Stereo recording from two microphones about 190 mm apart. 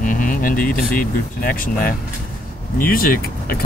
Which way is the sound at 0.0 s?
45° left (ahead or behind).